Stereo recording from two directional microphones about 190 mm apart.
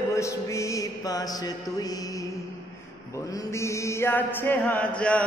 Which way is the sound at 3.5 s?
15° left (ahead or behind).